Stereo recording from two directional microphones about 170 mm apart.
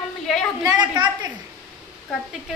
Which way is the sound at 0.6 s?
25° right (ahead or behind).